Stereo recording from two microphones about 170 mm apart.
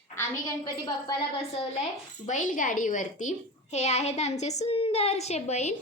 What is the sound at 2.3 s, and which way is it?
A woman's voice, 50° left (ahead or behind).